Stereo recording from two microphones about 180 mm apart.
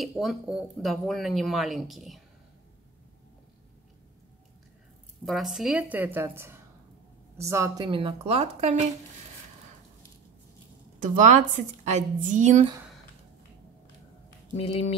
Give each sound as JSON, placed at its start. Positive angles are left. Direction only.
{"t": 0.0, "sound": "speech", "side_deg": 0}
{"t": 5.2, "sound": "a woman's voice", "side_deg": 0}
{"t": 11.0, "sound": "a woman's voice", "side_deg": -40}
{"t": 14.6, "sound": "speech", "side_deg": 35}